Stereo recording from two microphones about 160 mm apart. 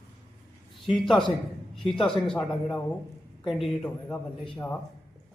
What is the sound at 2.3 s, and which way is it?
Speech, 10° left (ahead or behind).